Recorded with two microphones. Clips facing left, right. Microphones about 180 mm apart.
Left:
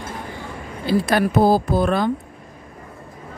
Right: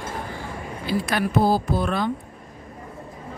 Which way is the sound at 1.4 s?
45° left (ahead or behind).